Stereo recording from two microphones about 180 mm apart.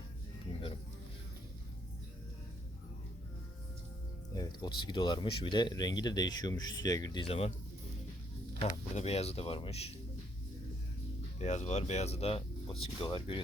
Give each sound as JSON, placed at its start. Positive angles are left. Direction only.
{"t": 4.4, "sound": "speech", "side_deg": 25}
{"t": 8.7, "sound": "speech", "side_deg": 35}
{"t": 11.3, "sound": "speech", "side_deg": 40}